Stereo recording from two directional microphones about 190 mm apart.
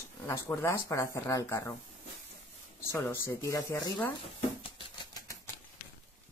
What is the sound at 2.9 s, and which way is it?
Speech, 15° left (ahead or behind).